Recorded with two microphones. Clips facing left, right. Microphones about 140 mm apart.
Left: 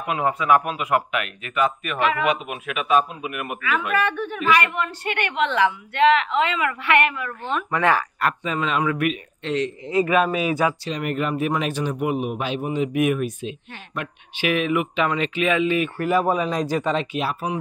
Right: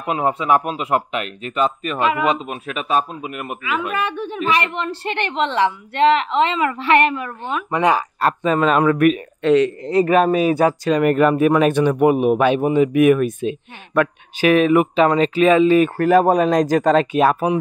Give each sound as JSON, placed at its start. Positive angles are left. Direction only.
{"t": 0.0, "sound": "a woman's voice", "side_deg": -25}
{"t": 8.4, "sound": "a man's voice", "side_deg": -50}
{"t": 10.9, "sound": "a man's voice", "side_deg": -55}